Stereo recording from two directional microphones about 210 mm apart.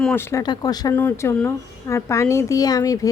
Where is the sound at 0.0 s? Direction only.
10° left (ahead or behind).